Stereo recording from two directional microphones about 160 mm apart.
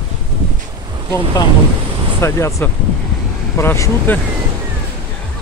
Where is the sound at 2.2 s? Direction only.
15° left (ahead or behind).